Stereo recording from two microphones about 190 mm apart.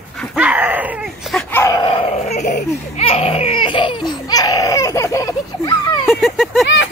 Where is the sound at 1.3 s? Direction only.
15° left (ahead or behind); by 2.6 s 40° left (ahead or behind).